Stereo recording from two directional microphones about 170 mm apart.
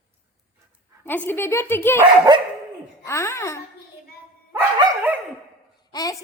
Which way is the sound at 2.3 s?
25° right (ahead or behind).